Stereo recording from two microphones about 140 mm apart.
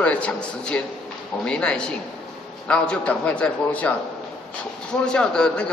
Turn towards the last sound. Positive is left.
turn(degrees=5)  # may be behind; listen again after turning